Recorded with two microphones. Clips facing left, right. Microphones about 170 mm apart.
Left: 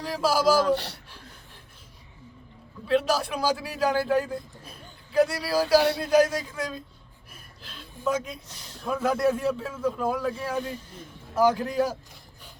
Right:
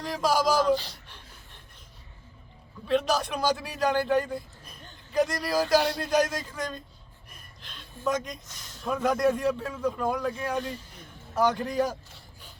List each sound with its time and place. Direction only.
0.0 s speech: 5° left (ahead or behind)
0.7 s speech: 70° left (ahead or behind)
2.8 s a man's voice: 5° left (ahead or behind)
7.6 s a sound: 5° left (ahead or behind)
8.0 s a man's voice: 5° left (ahead or behind)
8.4 s speech: 30° left (ahead or behind)
8.9 s a man's voice: 5° left (ahead or behind)